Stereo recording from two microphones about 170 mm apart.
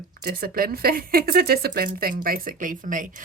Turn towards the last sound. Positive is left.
turn(degrees=-50)  # may be behind; listen again after turning